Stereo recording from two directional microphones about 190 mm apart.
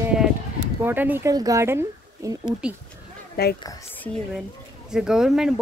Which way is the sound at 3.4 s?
55° left (ahead or behind).